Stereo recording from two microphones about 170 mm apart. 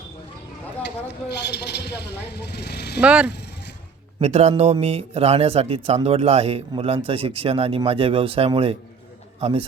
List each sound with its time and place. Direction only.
0.9 s speech: 75° left (ahead or behind)
3.0 s speech: 5° right (ahead or behind)
3.2 s speech: 80° left
4.2 s speech: 40° right (ahead or behind)